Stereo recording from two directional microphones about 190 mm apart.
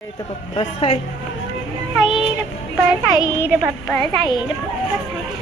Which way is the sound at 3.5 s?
Centre (ahead or behind).